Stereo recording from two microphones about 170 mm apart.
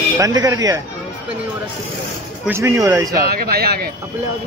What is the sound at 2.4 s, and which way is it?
Speech, 15° right (ahead or behind).